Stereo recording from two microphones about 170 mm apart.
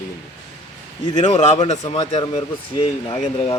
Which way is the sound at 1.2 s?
40° left (ahead or behind).